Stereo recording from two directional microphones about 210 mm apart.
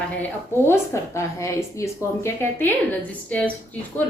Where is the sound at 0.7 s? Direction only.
15° left (ahead or behind).